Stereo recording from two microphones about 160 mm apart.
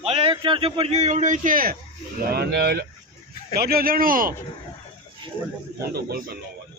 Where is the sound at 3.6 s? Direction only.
70° right (ahead or behind).